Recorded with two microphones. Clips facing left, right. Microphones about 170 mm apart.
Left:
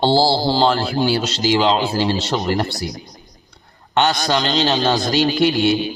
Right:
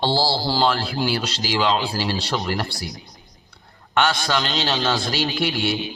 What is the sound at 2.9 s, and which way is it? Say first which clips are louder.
A man's voice: left 6 dB; 40° left (ahead or behind).